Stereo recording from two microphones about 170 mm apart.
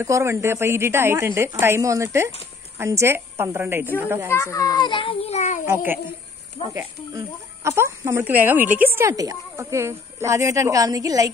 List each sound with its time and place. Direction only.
0.0 s a woman's voice: 15° right (ahead or behind)
4.3 s a child's voice: 15° left (ahead or behind); by 5.6 s 40° left (ahead or behind)
5.7 s a woman's voice: 10° right (ahead or behind)